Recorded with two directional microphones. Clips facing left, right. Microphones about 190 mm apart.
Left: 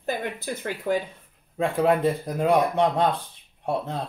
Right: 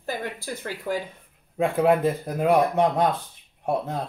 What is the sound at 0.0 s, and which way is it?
Speech, 20° left (ahead or behind).